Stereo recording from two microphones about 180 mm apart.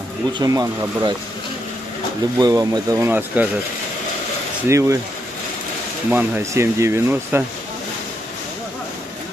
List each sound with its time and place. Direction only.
0.3 s speech: 20° right (ahead or behind)
2.3 s speech: 20° right (ahead or behind)
4.6 s speech: 15° right (ahead or behind)
6.0 s speech: 10° right (ahead or behind)